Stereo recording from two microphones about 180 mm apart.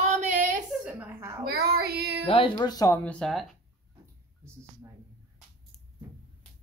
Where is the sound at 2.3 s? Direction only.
30° left (ahead or behind).